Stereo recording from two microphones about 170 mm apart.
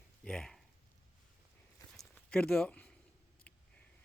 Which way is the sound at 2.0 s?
5° left (ahead or behind).